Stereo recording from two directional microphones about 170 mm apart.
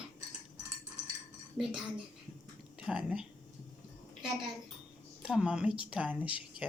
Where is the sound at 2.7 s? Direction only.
5° right (ahead or behind).